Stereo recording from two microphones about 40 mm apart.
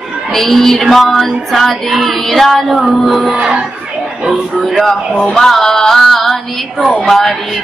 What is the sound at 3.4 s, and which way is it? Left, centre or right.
Crowd, centre.